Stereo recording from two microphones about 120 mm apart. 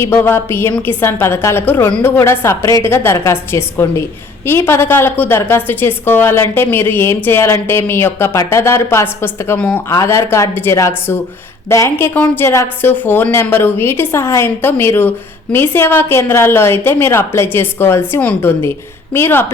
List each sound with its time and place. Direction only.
0.0 s a woman's voice: 20° left (ahead or behind)